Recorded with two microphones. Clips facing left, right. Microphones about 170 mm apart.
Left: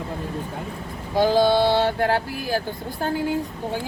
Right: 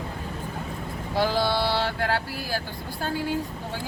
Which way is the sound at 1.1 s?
20° left (ahead or behind).